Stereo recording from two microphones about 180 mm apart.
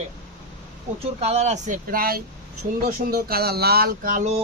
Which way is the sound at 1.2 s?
35° right (ahead or behind).